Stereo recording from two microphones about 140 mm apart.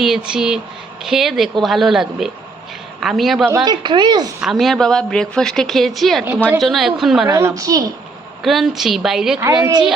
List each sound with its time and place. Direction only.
0.0 s a woman's voice: 5° right (ahead or behind)
3.6 s speech: 30° right (ahead or behind)
4.4 s a woman's voice: centre (ahead or behind)
6.2 s a woman's voice: 15° right (ahead or behind)
6.6 s a woman's voice: centre (ahead or behind)
7.3 s a woman's voice: 20° right (ahead or behind)
8.4 s a woman's voice: centre (ahead or behind)